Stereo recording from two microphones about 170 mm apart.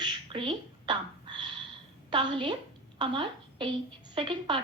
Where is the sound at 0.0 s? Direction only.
30° right (ahead or behind).